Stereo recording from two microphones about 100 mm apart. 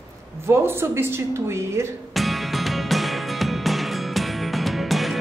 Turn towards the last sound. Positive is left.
turn(degrees=0)  # may be behind; listen again after turning